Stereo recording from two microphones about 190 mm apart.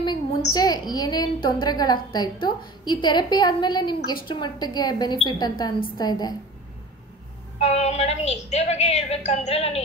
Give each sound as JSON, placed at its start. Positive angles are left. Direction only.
{"t": 0.5, "sound": "a woman's voice", "side_deg": 20}
{"t": 7.5, "sound": "a woman's voice", "side_deg": 35}